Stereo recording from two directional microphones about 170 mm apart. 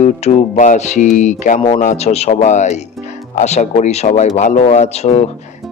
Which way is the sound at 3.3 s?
40° left (ahead or behind).